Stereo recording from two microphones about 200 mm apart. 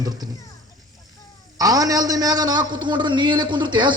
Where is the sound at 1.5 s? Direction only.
20° right (ahead or behind).